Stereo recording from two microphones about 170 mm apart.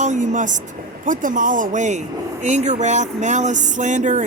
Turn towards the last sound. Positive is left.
turn(degrees=-45)  # may be behind; listen again after turning